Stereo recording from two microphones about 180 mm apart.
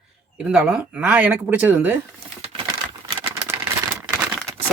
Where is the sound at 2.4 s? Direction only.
30° right (ahead or behind).